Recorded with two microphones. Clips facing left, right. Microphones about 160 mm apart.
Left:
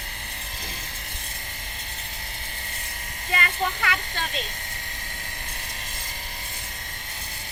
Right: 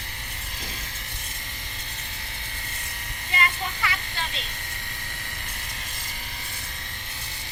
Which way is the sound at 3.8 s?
55° left (ahead or behind).